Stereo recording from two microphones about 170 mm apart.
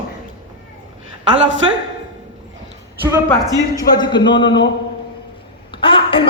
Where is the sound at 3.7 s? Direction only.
25° left (ahead or behind).